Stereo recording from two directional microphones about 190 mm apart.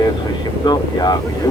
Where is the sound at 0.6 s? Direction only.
20° left (ahead or behind).